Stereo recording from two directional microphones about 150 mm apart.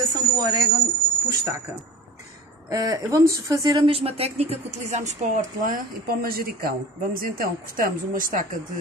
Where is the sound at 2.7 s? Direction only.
25° right (ahead or behind).